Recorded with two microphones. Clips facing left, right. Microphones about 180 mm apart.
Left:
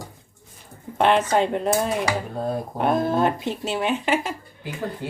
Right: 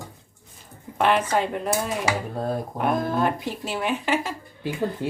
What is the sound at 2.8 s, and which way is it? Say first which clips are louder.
Speech: left 3 dB; 25° left (ahead or behind).